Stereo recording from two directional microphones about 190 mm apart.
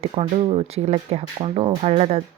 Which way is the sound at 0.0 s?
30° right (ahead or behind).